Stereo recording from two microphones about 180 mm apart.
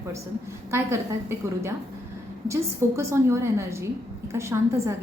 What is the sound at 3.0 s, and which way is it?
A woman's voice, 15° right (ahead or behind).